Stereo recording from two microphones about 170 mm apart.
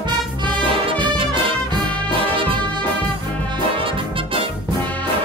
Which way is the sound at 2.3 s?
30° right (ahead or behind).